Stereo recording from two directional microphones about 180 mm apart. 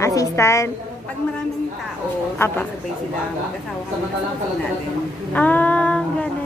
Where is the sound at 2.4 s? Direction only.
15° left (ahead or behind).